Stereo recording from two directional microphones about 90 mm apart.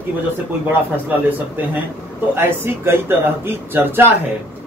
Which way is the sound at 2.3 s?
25° right (ahead or behind).